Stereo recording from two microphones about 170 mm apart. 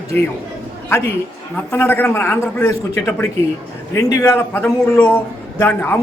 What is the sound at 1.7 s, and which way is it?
A man's voice, 15° left (ahead or behind).